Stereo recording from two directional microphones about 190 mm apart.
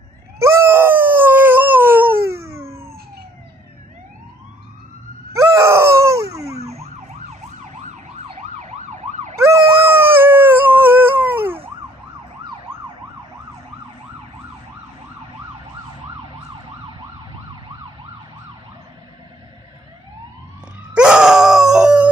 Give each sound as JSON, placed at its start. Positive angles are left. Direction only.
{"t": 0.4, "sound": "dog", "side_deg": -15}
{"t": 5.3, "sound": "a sound", "side_deg": -15}
{"t": 6.6, "sound": "emergency vehicle", "side_deg": -35}
{"t": 9.4, "sound": "howl", "side_deg": -15}
{"t": 20.9, "sound": "groan", "side_deg": -5}